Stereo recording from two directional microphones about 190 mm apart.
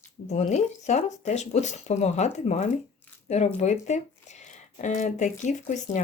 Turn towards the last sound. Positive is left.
turn(degrees=40)  # may be behind; listen again after turning